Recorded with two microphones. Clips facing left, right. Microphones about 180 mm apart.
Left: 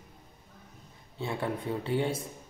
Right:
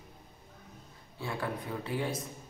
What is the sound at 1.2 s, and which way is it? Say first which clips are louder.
Speech: left 3 dB; 25° left (ahead or behind).